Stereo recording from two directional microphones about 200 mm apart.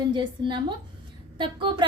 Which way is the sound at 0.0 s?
20° right (ahead or behind).